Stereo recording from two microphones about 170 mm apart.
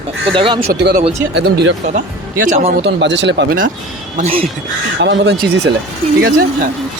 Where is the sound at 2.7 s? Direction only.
85° right.